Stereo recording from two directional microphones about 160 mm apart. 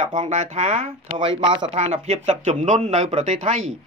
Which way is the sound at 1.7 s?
45° right (ahead or behind).